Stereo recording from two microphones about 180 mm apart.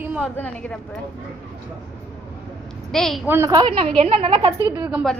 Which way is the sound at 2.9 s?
Centre (ahead or behind).